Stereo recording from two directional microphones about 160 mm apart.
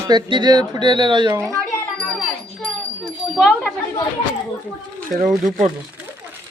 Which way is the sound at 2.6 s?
5° left (ahead or behind).